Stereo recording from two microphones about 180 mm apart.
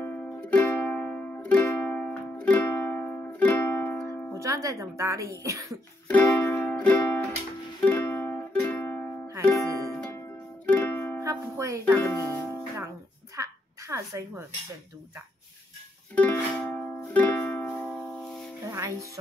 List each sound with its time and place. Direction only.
0.0 s music: 10° left (ahead or behind)
4.4 s speech: 15° right (ahead or behind)
6.0 s music: 10° left (ahead or behind)
11.2 s music: 15° right (ahead or behind)
12.0 s speech: 15° left (ahead or behind)
13.4 s a sound: 15° right (ahead or behind)
16.2 s music: 10° left (ahead or behind)
18.7 s music: 15° right (ahead or behind)